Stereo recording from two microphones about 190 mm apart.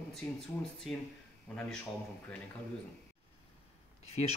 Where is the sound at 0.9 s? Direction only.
Centre (ahead or behind).